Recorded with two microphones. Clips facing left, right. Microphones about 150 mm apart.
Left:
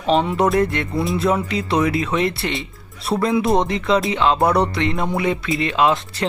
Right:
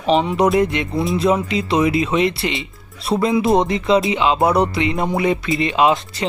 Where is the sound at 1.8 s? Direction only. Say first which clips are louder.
Right 4 dB; 20° right (ahead or behind).